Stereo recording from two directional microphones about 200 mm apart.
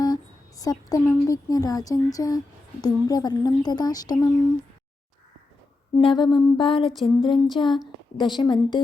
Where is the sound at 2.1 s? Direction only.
20° left (ahead or behind).